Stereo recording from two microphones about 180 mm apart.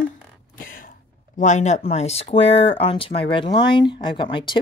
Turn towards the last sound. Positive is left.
turn(degrees=25)  # may be behind; listen again after turning